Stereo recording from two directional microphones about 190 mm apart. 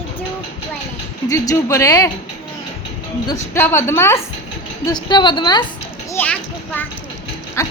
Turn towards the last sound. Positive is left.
turn(degrees=15)  # may be behind; listen again after turning